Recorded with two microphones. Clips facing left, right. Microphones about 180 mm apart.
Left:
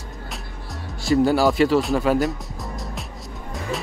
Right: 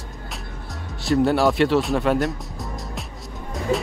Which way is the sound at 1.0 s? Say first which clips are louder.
Left 1 dB; centre (ahead or behind).